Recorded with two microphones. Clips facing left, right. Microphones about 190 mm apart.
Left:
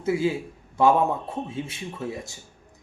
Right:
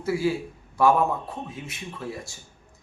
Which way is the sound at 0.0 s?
20° left (ahead or behind).